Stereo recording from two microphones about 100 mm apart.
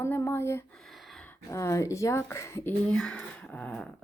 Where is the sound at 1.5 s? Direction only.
30° left (ahead or behind).